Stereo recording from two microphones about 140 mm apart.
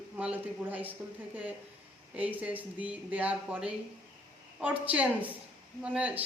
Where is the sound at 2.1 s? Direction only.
10° right (ahead or behind).